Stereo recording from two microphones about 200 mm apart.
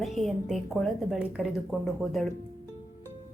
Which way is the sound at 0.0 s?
Centre (ahead or behind).